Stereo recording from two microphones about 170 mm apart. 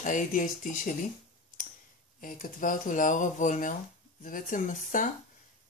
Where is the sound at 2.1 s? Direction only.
50° left (ahead or behind).